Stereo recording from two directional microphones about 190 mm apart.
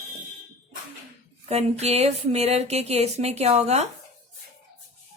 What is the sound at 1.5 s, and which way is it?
A woman's voice, 35° right (ahead or behind).